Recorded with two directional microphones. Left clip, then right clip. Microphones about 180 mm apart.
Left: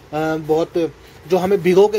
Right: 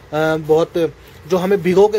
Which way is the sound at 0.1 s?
10° right (ahead or behind).